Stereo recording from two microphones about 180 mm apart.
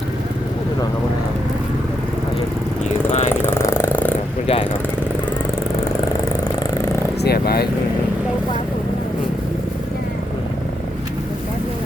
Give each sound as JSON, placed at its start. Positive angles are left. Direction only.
{"t": 3.1, "sound": "vehicle", "side_deg": 40}
{"t": 3.4, "sound": "purr", "side_deg": 15}
{"t": 7.2, "sound": "speech", "side_deg": 60}